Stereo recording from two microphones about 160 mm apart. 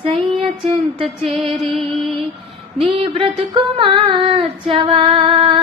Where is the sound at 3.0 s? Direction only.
35° right (ahead or behind).